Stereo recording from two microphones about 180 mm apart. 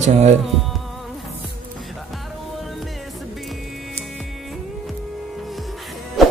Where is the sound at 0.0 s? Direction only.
40° right (ahead or behind).